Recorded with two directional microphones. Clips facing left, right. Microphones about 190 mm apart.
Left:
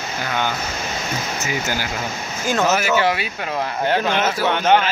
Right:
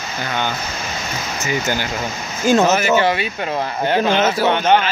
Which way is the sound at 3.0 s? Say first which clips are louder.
Right 2 dB; 5° left (ahead or behind).